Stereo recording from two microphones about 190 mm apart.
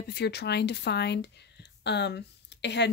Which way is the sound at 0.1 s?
60° left (ahead or behind).